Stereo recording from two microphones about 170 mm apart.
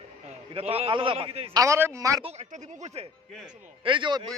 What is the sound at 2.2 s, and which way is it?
Speech, 40° right (ahead or behind).